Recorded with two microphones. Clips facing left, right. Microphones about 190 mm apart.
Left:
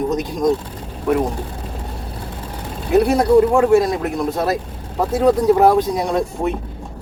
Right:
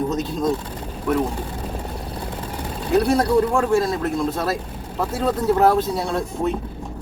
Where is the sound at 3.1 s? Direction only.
15° left (ahead or behind).